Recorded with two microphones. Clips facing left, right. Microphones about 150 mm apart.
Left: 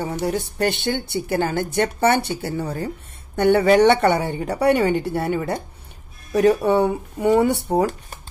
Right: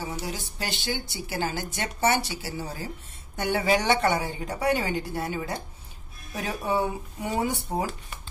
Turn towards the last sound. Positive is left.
turn(degrees=65)  # may be behind; listen again after turning